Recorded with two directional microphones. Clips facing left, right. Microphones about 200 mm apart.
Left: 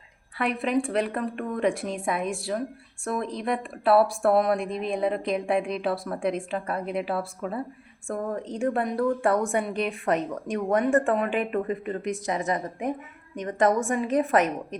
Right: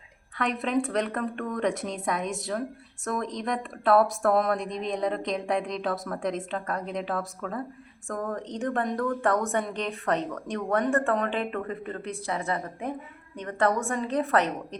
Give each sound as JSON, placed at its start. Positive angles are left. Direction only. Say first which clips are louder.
{"t": 0.3, "sound": "a woman's voice", "louder": "left 1 dB", "side_deg": 5}